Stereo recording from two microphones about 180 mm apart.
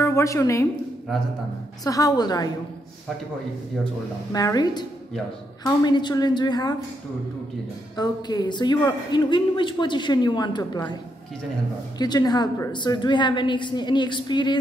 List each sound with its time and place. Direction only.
0.0 s a woman's voice: 15° left (ahead or behind)
1.9 s a man's voice: 20° left (ahead or behind)
4.3 s a man's voice: 20° left (ahead or behind)
7.9 s a man's voice: 20° left (ahead or behind)
12.0 s a man's voice: 20° left (ahead or behind)